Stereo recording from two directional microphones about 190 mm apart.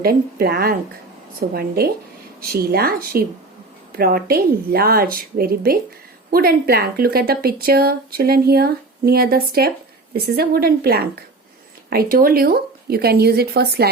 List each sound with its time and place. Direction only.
0.0 s a woman's voice: 50° right (ahead or behind)